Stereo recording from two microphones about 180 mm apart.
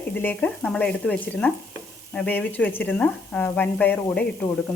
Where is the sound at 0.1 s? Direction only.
10° left (ahead or behind).